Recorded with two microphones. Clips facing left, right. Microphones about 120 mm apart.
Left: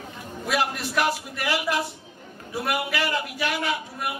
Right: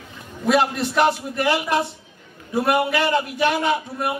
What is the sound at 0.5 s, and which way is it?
A man's voice, 25° right (ahead or behind).